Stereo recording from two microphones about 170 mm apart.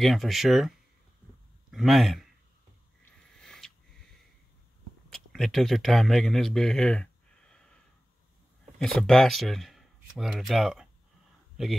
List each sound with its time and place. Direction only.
0.0 s speech: centre (ahead or behind)
3.1 s a sound: 5° left (ahead or behind)
5.1 s speech: centre (ahead or behind)
8.7 s speech: centre (ahead or behind)